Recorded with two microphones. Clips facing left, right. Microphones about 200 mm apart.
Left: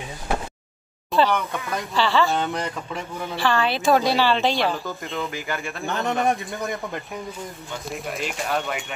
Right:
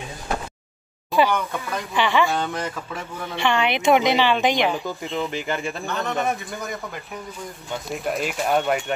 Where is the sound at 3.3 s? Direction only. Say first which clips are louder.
Right 1 dB; 15° right (ahead or behind).